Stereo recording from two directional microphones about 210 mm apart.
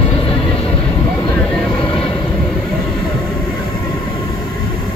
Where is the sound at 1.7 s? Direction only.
25° left (ahead or behind).